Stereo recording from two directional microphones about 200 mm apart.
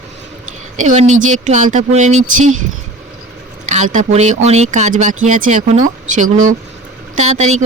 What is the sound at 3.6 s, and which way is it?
Speech, 35° right (ahead or behind).